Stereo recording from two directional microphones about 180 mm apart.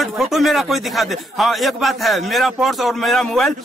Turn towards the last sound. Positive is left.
turn(degrees=5)  # may be behind; listen again after turning